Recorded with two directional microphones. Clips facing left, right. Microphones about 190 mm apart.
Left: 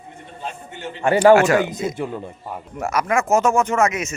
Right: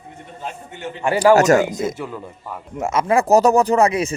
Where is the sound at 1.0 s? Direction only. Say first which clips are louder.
Left 2 dB; 25° left (ahead or behind).